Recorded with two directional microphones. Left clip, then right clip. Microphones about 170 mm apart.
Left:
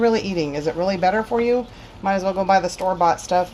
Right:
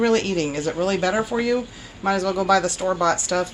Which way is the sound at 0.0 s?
40° left (ahead or behind).